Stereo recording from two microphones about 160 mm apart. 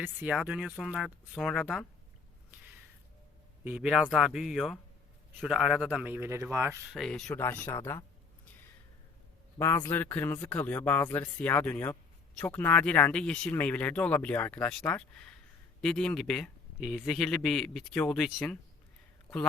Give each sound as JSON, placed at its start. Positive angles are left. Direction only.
{"t": 0.0, "sound": "speech", "side_deg": -10}
{"t": 3.6, "sound": "speech", "side_deg": -10}
{"t": 6.9, "sound": "speech", "side_deg": 5}
{"t": 7.3, "sound": "speech", "side_deg": 15}
{"t": 9.6, "sound": "a man's voice", "side_deg": 20}